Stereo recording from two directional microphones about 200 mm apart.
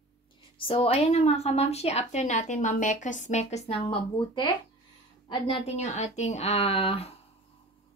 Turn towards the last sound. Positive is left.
turn(degrees=30)  # may be behind; listen again after turning